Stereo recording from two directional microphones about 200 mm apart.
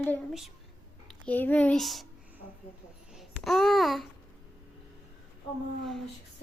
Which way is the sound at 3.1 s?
Centre (ahead or behind).